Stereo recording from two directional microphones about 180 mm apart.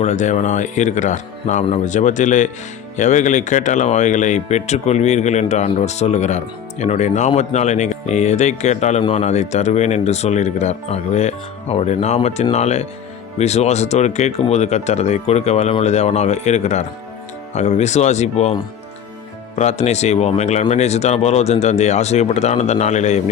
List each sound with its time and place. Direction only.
0.0 s a man's voice: 40° left (ahead or behind)